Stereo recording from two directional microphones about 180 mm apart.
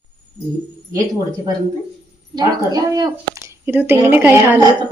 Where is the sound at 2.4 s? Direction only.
20° right (ahead or behind).